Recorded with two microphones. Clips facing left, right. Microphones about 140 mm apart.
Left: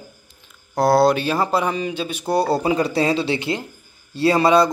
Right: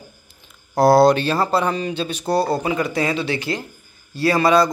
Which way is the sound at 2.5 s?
30° left (ahead or behind).